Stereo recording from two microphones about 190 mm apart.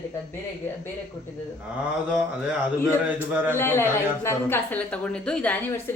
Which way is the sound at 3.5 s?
10° left (ahead or behind).